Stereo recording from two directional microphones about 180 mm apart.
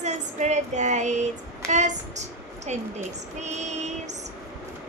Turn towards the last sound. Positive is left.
turn(degrees=-40)  # may be behind; listen again after turning